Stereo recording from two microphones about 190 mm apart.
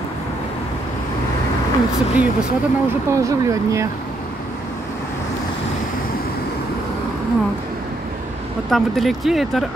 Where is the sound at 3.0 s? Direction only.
15° right (ahead or behind).